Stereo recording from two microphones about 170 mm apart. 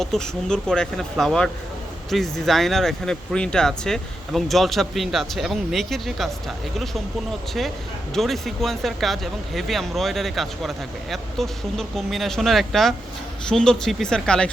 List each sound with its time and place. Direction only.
0.0 s speech: 5° left (ahead or behind)
8.1 s speech: centre (ahead or behind)